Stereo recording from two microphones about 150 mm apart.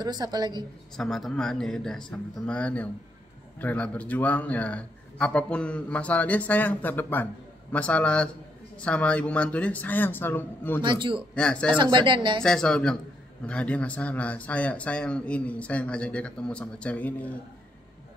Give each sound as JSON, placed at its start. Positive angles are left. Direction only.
{"t": 0.0, "sound": "a woman's voice", "side_deg": -25}
{"t": 0.9, "sound": "a man's voice", "side_deg": 0}
{"t": 10.8, "sound": "speech", "side_deg": -35}
{"t": 11.3, "sound": "a man's voice", "side_deg": 5}
{"t": 11.8, "sound": "speech", "side_deg": -30}
{"t": 12.4, "sound": "a man's voice", "side_deg": 5}